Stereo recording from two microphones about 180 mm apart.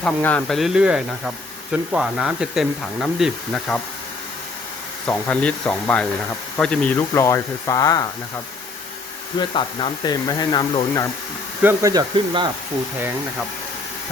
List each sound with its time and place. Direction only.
0.0 s speech: 5° left (ahead or behind)
5.0 s speech: 5° left (ahead or behind)
9.4 s speech: 30° left (ahead or behind)
11.6 s speech: 20° right (ahead or behind)